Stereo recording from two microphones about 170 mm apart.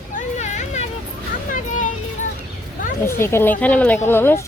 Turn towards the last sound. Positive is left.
turn(degrees=15)  # may be behind; listen again after turning